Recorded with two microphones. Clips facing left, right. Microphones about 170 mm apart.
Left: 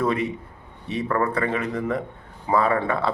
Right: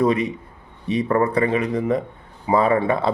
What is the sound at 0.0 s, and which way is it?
A man's voice, 15° right (ahead or behind).